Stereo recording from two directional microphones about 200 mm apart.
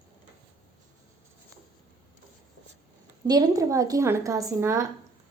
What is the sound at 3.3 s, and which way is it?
A woman's voice, 20° right (ahead or behind).